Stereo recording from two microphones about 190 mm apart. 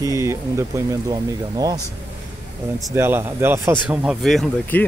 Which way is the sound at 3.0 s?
15° right (ahead or behind).